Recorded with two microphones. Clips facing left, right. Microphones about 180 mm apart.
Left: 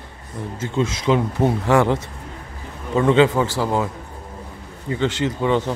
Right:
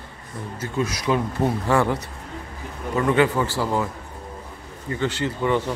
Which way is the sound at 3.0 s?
20° left (ahead or behind).